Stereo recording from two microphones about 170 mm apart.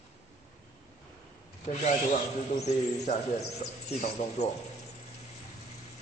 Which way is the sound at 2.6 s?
40° left (ahead or behind).